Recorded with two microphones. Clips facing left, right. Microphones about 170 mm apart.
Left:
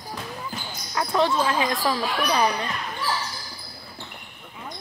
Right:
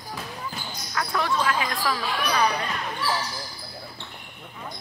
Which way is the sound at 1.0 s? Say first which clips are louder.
Left 4 dB; 25° left (ahead or behind).